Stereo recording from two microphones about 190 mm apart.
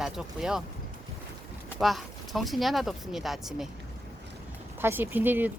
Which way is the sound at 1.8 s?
Centre (ahead or behind).